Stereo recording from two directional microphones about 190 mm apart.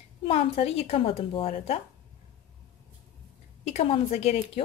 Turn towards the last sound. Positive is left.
turn(degrees=35)  # may be behind; listen again after turning